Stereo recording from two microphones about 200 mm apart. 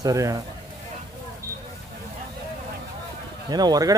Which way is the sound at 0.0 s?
15° right (ahead or behind).